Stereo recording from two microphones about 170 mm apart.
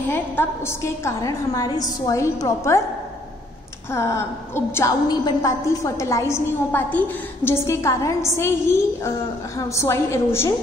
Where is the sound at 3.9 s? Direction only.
15° left (ahead or behind).